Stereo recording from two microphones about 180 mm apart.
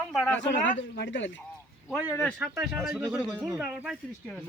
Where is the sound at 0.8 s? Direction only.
75° left (ahead or behind).